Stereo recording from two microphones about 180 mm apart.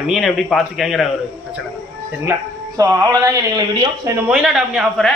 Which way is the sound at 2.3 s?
15° right (ahead or behind).